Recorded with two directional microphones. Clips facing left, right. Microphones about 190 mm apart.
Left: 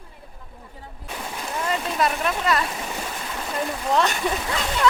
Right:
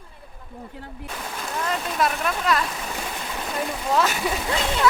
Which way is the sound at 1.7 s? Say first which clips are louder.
Left 1 dB; 5° left (ahead or behind).